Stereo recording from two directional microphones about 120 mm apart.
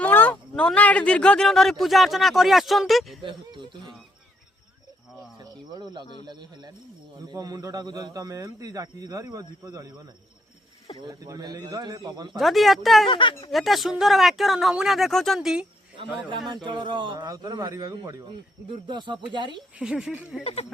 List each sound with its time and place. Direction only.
0.0 s speech: 15° left (ahead or behind)
3.2 s a sound: 40° right (ahead or behind)
5.7 s speech: 40° right (ahead or behind)
7.3 s speech: 35° right (ahead or behind)
11.0 s speech: 30° right (ahead or behind)
12.4 s speech: centre (ahead or behind)
13.1 s speech: 45° left (ahead or behind)
13.5 s speech: centre (ahead or behind)
16.6 s speech: 40° right (ahead or behind)
18.3 s speech: 45° right (ahead or behind)
19.8 s speech: 5° right (ahead or behind)
20.4 s speech: 55° left (ahead or behind)